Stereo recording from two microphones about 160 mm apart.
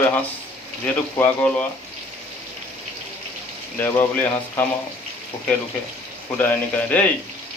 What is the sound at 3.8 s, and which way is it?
Speech, 15° left (ahead or behind).